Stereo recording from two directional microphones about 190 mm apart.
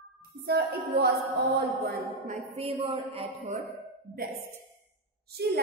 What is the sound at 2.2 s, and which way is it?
Music, 35° right (ahead or behind).